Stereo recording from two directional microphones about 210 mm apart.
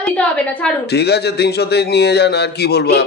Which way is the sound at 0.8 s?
50° left (ahead or behind).